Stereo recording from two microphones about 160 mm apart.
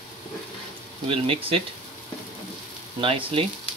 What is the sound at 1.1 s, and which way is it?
Speech, 35° right (ahead or behind).